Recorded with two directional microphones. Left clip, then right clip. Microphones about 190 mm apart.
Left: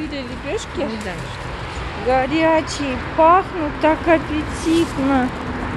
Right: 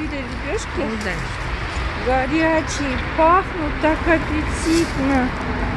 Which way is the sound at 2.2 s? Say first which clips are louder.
Left 2 dB; 10° left (ahead or behind).